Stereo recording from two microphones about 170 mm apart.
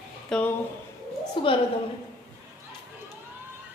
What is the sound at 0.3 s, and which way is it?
Speech, 5° left (ahead or behind).